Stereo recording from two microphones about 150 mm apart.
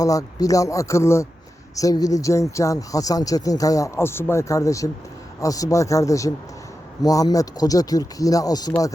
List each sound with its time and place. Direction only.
0.0 s speech: 25° left (ahead or behind)